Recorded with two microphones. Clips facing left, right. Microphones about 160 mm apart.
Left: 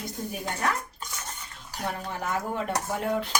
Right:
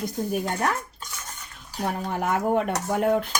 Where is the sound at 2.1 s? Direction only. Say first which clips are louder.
Right 9 dB; 55° right (ahead or behind).